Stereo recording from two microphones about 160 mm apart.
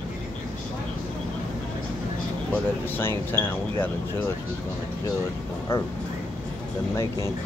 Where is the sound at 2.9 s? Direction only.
15° left (ahead or behind).